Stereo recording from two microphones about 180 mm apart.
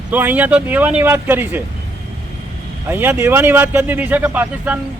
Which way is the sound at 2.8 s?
10° right (ahead or behind).